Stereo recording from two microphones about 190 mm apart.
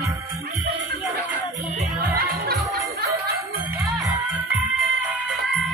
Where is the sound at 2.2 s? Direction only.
55° right (ahead or behind).